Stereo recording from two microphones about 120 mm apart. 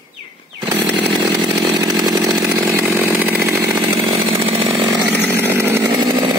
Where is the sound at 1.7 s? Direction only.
35° right (ahead or behind).